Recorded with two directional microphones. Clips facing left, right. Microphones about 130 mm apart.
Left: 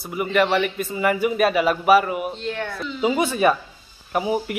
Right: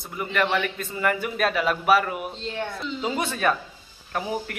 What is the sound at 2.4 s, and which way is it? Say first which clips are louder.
Speech: left 3 dB; 25° right (ahead or behind).